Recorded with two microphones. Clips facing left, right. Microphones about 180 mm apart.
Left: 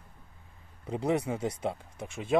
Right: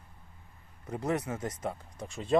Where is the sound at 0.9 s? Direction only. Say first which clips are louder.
Left 3 dB; 15° left (ahead or behind).